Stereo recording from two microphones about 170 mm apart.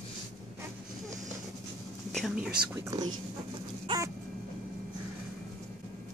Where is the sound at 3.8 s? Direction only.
25° right (ahead or behind).